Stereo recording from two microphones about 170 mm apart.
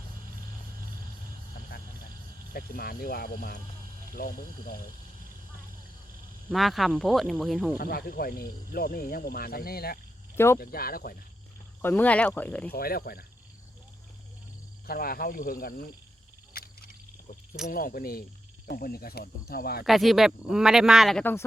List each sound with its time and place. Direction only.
2.5 s speech: 60° left (ahead or behind)
6.5 s speech: centre (ahead or behind)
7.8 s speech: 60° left (ahead or behind)
10.3 s speech: 15° left (ahead or behind)
10.6 s speech: 60° left (ahead or behind)
11.8 s speech: 10° left (ahead or behind)
12.7 s speech: 60° left (ahead or behind)
14.8 s speech: 60° left (ahead or behind)
16.5 s vehicle: 65° left (ahead or behind)
17.7 s speech: 55° left (ahead or behind)
19.8 s speech: centre (ahead or behind)